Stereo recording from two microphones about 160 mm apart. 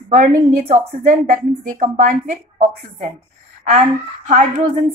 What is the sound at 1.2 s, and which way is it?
A woman's voice, 55° right (ahead or behind).